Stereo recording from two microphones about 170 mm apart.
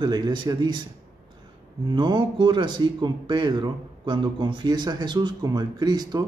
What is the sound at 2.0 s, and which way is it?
Speech, 25° right (ahead or behind).